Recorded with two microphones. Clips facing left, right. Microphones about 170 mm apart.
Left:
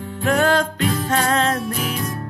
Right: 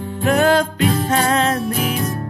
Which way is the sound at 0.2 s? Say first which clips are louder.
Right 3 dB; 10° right (ahead or behind).